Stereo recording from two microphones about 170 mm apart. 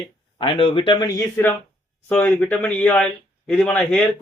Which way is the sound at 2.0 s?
10° left (ahead or behind).